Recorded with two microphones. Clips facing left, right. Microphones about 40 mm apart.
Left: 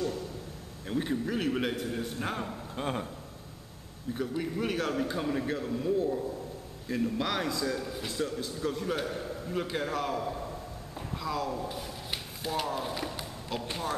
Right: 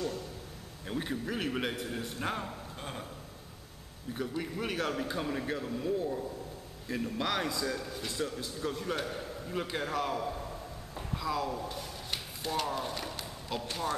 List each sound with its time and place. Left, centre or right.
0.8 s a man's voice: centre
2.7 s speech: left
4.3 s a man's voice: centre